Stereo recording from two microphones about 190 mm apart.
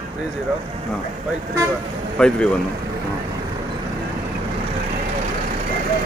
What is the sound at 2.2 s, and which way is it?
Speech, 5° left (ahead or behind).